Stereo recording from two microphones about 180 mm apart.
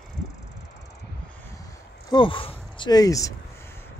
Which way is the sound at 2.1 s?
30° left (ahead or behind).